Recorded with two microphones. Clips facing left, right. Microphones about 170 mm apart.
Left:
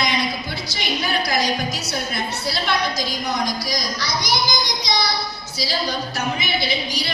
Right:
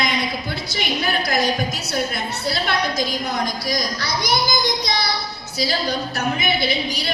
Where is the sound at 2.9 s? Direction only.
55° right (ahead or behind).